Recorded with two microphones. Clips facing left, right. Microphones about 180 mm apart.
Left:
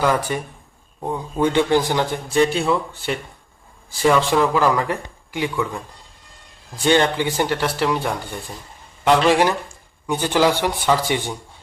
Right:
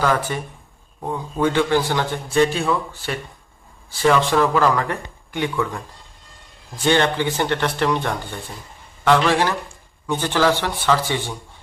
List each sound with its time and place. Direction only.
0.0 s speech: 15° left (ahead or behind)
1.4 s a man's voice: 15° left (ahead or behind)
4.0 s speech: 10° left (ahead or behind)